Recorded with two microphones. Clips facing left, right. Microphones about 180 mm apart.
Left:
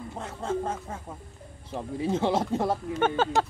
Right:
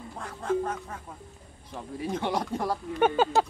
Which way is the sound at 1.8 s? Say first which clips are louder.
Left 4 dB; 25° left (ahead or behind).